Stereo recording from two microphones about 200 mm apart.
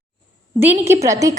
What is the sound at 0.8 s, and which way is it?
Speech, 15° right (ahead or behind).